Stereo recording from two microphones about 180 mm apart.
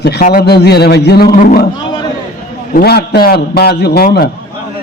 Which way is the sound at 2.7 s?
60° left (ahead or behind).